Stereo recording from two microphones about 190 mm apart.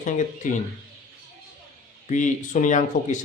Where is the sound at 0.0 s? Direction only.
40° left (ahead or behind).